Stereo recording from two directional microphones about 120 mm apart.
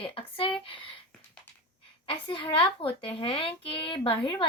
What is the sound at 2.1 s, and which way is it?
A woman's voice, 45° left (ahead or behind).